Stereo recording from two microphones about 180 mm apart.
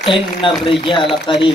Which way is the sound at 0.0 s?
30° left (ahead or behind).